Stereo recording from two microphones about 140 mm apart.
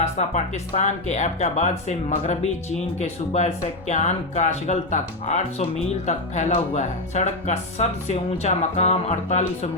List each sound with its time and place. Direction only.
0.0 s speech: 55° left (ahead or behind)